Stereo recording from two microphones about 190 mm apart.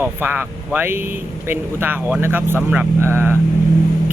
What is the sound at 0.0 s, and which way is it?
Speech, 10° right (ahead or behind).